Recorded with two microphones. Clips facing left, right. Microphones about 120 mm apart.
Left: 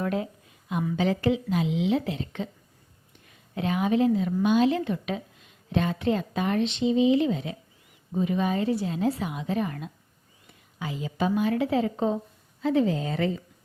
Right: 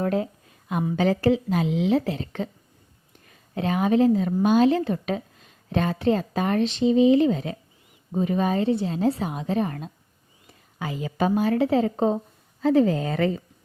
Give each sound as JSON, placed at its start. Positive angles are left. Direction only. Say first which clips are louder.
{"t": 0.0, "sound": "a woman's voice", "louder": "right 4 dB", "side_deg": -35}
{"t": 10.8, "sound": "a woman's voice", "louder": "right 3 dB", "side_deg": -50}